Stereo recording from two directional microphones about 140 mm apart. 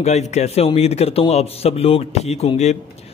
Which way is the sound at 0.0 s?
55° left (ahead or behind).